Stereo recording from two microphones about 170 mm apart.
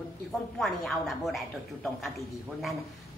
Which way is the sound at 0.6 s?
Centre (ahead or behind).